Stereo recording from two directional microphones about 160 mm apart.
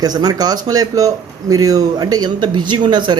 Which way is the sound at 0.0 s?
25° right (ahead or behind).